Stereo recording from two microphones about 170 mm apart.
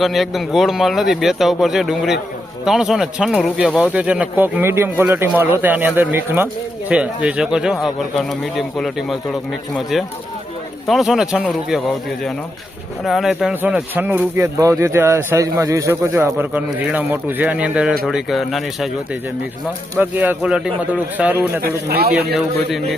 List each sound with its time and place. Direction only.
0.0 s speech: centre (ahead or behind)
3.8 s speech: 10° right (ahead or behind)
20.0 s speech: 10° right (ahead or behind)
21.8 s speech: 65° right (ahead or behind)
22.3 s speech: centre (ahead or behind)